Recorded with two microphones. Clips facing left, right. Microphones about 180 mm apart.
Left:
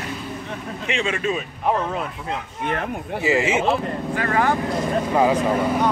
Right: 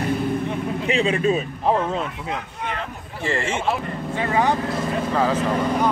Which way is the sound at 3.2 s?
5° left (ahead or behind).